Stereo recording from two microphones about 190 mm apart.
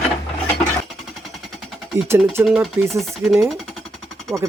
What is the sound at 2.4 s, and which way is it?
Speech, 10° right (ahead or behind).